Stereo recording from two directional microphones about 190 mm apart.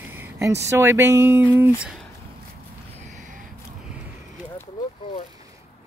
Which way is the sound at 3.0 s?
40° right (ahead or behind).